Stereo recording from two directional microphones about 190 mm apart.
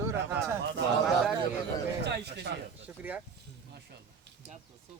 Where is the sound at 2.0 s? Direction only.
65° right (ahead or behind).